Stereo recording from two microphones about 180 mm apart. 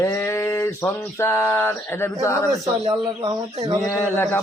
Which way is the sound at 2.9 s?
20° right (ahead or behind).